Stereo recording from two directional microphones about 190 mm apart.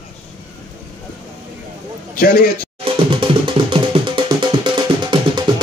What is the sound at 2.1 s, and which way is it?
Speech, 50° left (ahead or behind).